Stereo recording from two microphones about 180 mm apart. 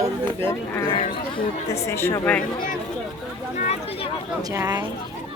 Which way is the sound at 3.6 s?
40° left (ahead or behind).